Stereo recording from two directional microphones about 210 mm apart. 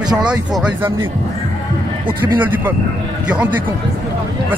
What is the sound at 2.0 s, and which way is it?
Speech, 10° right (ahead or behind).